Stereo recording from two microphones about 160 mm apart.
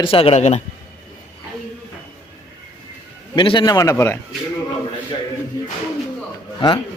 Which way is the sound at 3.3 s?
30° left (ahead or behind).